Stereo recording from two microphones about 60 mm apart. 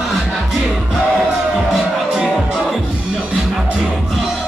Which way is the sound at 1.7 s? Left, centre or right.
Centre.